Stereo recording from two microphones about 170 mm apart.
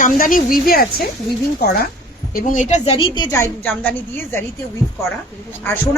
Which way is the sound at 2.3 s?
55° left (ahead or behind).